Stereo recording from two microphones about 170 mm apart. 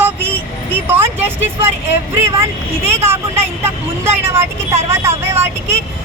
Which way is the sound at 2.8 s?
15° right (ahead or behind).